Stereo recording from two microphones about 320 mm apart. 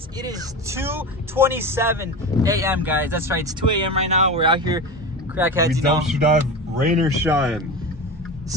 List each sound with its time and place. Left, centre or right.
0.2 s speech: centre
6.8 s speech: right
7.2 s speech: centre